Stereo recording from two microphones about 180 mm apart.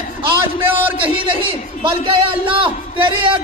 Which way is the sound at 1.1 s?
30° right (ahead or behind).